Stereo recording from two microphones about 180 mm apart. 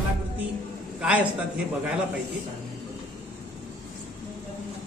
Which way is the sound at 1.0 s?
5° right (ahead or behind).